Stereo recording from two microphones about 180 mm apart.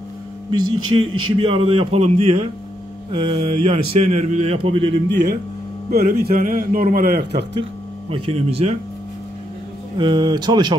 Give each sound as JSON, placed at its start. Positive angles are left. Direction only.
{"t": 0.5, "sound": "a man's voice", "side_deg": -30}
{"t": 5.1, "sound": "speech", "side_deg": -70}
{"t": 5.9, "sound": "a man's voice", "side_deg": -55}
{"t": 8.1, "sound": "a man's voice", "side_deg": -35}
{"t": 9.9, "sound": "speech", "side_deg": -25}